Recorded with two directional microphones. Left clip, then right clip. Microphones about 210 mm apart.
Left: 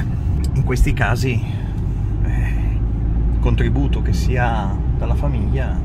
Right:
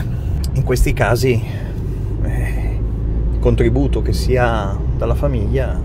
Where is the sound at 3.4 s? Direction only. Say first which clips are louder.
Right 8 dB; 25° right (ahead or behind).